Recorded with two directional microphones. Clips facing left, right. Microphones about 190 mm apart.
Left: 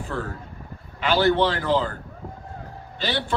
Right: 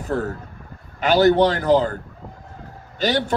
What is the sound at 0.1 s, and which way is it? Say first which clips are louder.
A man's voice: right 8 dB; 40° right (ahead or behind).